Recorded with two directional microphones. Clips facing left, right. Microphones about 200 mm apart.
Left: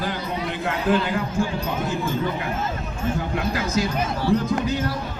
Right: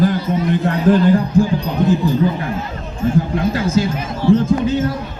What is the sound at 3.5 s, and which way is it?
Speech, 30° right (ahead or behind).